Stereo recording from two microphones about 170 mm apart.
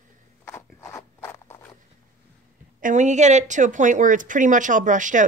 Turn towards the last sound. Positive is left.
turn(degrees=-50)  # may be behind; listen again after turning